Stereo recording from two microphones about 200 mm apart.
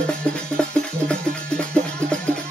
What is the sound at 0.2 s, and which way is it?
Music, 5° left (ahead or behind).